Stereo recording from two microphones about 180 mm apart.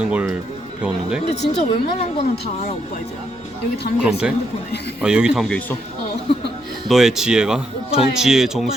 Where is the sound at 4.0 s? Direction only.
5° right (ahead or behind).